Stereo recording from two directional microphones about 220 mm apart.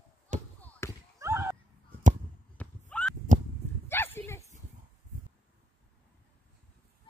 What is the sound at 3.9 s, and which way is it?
Dog, 10° left (ahead or behind).